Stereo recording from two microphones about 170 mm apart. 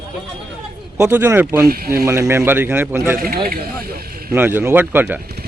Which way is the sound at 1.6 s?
65° right (ahead or behind).